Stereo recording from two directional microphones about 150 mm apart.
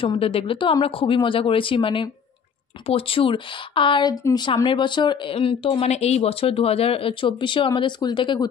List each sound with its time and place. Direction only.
0.0 s speech: 35° left (ahead or behind)